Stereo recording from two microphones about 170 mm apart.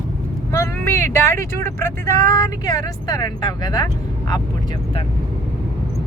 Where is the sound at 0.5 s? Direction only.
15° left (ahead or behind).